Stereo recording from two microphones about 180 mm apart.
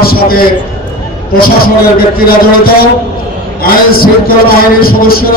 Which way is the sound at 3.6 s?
55° left (ahead or behind).